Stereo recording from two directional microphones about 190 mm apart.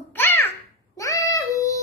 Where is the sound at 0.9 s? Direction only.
15° left (ahead or behind).